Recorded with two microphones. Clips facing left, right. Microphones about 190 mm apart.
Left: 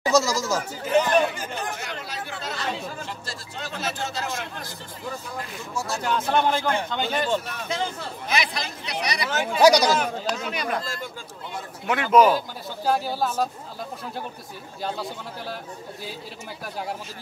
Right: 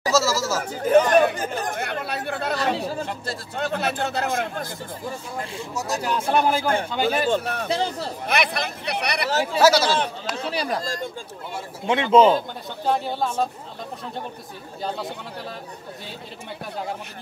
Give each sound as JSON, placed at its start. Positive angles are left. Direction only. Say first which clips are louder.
{"t": 0.0, "sound": "chatter", "louder": "even", "side_deg": 15}
{"t": 0.7, "sound": "chatter", "louder": "right 5 dB", "side_deg": -50}
{"t": 2.7, "sound": "chatter", "louder": "right 6 dB", "side_deg": -35}
{"t": 3.1, "sound": "speech", "louder": "right 5 dB", "side_deg": -55}
{"t": 5.4, "sound": "speech", "louder": "right 3 dB", "side_deg": -25}
{"t": 5.9, "sound": "speech", "louder": "right 1 dB", "side_deg": -10}
{"t": 7.2, "sound": "speech", "louder": "right 4 dB", "side_deg": -60}
{"t": 7.6, "sound": "speech", "louder": "right 4 dB", "side_deg": -35}
{"t": 8.3, "sound": "speech", "louder": "right 3 dB", "side_deg": -60}
{"t": 9.3, "sound": "speech", "louder": "right 4 dB", "side_deg": -35}
{"t": 9.6, "sound": "speech", "louder": "left 1 dB", "side_deg": 15}
{"t": 10.3, "sound": "speech", "louder": "right 2 dB", "side_deg": -30}
{"t": 12.4, "sound": "speech", "louder": "right 2 dB", "side_deg": 5}
{"t": 14.8, "sound": "speech", "louder": "right 1 dB", "side_deg": 0}